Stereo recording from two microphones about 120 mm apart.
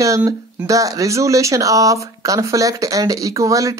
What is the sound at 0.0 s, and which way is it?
Speech, 25° right (ahead or behind).